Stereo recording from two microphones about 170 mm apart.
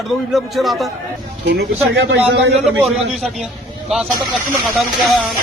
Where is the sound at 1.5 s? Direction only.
80° right.